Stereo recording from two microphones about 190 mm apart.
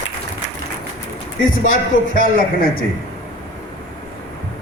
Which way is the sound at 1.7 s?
45° left (ahead or behind).